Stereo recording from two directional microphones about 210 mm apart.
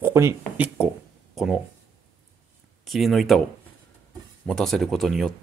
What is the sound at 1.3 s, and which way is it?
Speech, centre (ahead or behind).